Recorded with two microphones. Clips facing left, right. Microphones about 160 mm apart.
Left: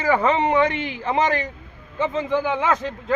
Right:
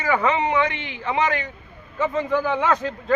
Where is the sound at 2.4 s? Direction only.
10° left (ahead or behind).